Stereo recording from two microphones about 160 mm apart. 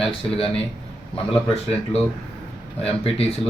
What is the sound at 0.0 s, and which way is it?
Speech, 35° left (ahead or behind).